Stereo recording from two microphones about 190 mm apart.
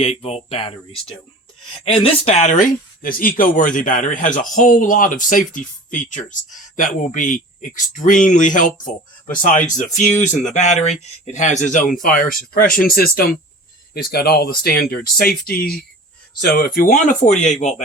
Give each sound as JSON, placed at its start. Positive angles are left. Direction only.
{"t": 0.0, "sound": "speech", "side_deg": 30}